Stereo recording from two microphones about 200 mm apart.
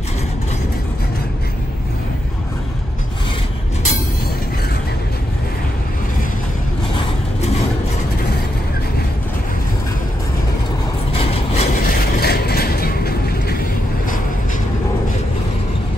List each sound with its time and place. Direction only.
11.1 s vehicle: 30° left (ahead or behind)
11.8 s vehicle: 50° left (ahead or behind)